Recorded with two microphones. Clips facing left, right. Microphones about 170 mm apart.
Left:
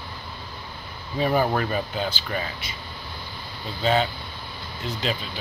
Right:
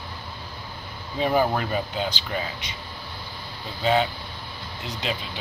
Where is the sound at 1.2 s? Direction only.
10° right (ahead or behind).